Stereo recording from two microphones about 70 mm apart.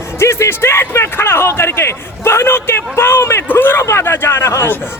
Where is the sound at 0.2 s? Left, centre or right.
Left.